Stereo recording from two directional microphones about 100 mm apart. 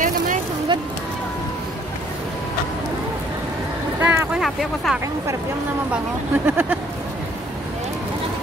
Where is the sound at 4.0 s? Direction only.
20° right (ahead or behind).